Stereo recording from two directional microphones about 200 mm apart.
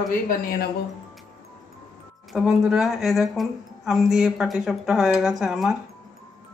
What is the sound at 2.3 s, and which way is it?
Speech, 5° right (ahead or behind).